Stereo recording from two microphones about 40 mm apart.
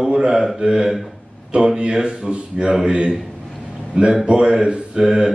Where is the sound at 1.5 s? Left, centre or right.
Right.